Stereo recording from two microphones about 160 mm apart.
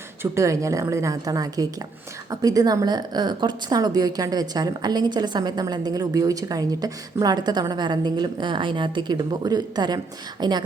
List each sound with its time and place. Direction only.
0.2 s a woman's voice: 20° right (ahead or behind)